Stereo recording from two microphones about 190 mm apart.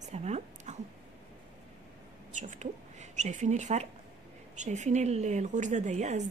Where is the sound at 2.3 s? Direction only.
40° right (ahead or behind).